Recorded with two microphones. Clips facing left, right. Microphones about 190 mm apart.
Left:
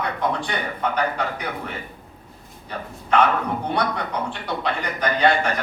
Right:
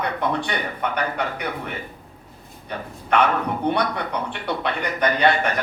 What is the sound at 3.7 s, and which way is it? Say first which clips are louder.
A man's voice: right 1 dB; 60° right (ahead or behind).